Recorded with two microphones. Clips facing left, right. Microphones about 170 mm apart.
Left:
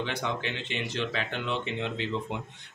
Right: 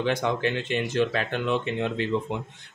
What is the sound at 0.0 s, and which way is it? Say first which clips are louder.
Speech: right 7 dB; 50° right (ahead or behind).